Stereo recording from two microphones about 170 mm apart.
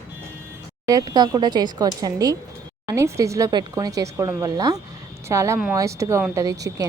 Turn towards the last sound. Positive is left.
turn(degrees=-20)  # may be behind; listen again after turning